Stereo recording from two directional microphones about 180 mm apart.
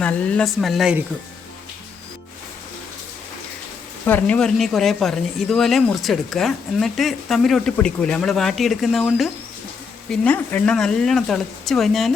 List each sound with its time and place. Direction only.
0.0 s speech: 5° left (ahead or behind)
4.0 s speech: 10° left (ahead or behind)